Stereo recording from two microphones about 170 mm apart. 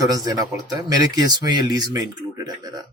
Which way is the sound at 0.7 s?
20° right (ahead or behind).